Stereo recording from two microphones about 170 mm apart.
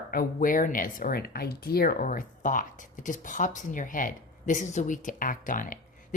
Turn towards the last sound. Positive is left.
turn(degrees=50)  # may be behind; listen again after turning